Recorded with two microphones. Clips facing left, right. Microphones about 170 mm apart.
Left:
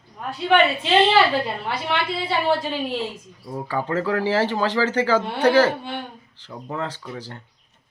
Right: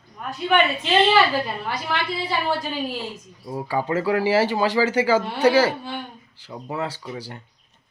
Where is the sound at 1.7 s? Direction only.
25° left (ahead or behind).